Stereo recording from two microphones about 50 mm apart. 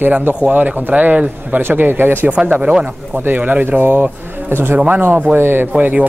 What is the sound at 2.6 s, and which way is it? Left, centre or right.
Speech, centre.